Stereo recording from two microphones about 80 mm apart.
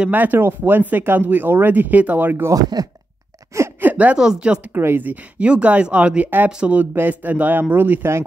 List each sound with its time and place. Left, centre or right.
0.0 s speech: right
2.5 s speech: right
3.8 s speech: centre
4.7 s speech: right